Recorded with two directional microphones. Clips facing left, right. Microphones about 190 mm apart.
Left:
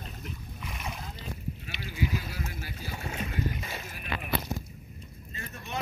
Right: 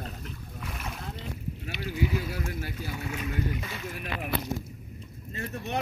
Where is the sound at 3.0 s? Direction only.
30° left (ahead or behind).